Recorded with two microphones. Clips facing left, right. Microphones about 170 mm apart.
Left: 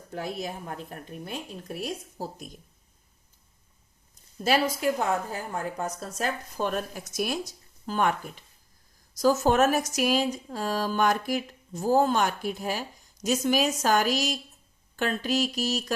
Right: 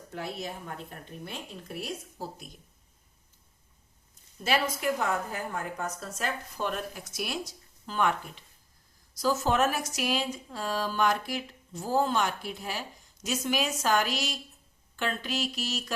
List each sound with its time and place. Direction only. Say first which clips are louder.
0.1 s a woman's voice: left 3 dB; 35° left (ahead or behind)
4.4 s a woman's voice: left 4 dB; 35° left (ahead or behind)